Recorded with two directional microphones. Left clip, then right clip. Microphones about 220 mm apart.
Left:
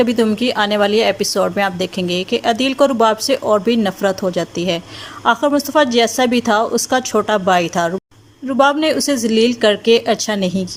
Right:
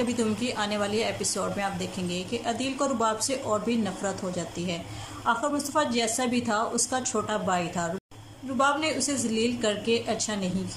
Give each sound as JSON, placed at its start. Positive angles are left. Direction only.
{"t": 0.0, "sound": "a woman's voice", "side_deg": 40}